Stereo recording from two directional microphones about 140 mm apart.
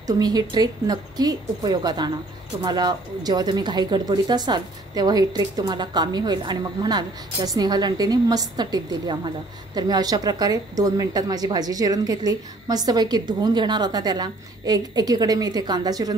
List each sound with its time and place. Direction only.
0.0 s speech: 30° right (ahead or behind)